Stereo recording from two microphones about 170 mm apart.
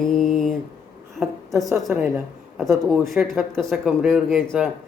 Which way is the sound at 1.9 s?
10° right (ahead or behind).